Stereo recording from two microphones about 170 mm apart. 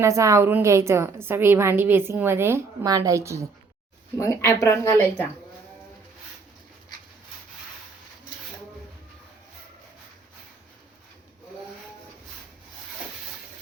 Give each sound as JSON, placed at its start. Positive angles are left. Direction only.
{"t": 0.0, "sound": "a woman's voice", "side_deg": -15}
{"t": 4.2, "sound": "speech", "side_deg": 15}